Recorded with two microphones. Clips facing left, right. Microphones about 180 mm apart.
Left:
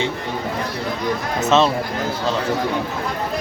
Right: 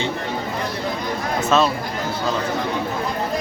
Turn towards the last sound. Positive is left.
turn(degrees=25)  # may be behind; listen again after turning